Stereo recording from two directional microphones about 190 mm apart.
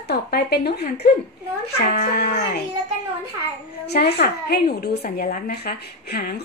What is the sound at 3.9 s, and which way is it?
A woman's voice, 60° left (ahead or behind).